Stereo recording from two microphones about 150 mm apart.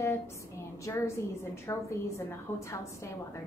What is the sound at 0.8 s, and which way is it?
A woman's voice, 20° left (ahead or behind).